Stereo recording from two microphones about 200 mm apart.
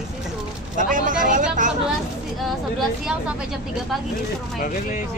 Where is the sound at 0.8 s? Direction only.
40° right (ahead or behind).